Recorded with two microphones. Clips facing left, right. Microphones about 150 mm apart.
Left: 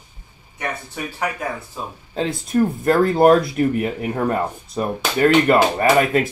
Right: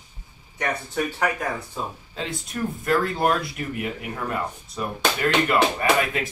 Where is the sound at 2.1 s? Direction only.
40° left (ahead or behind).